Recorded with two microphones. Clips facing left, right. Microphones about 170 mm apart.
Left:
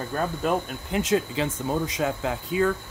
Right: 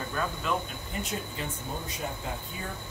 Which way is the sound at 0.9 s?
90° left.